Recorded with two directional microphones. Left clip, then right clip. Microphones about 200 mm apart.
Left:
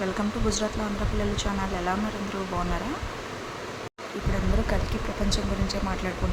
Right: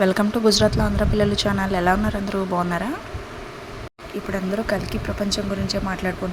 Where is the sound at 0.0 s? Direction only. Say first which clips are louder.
Right 10 dB; 30° right (ahead or behind).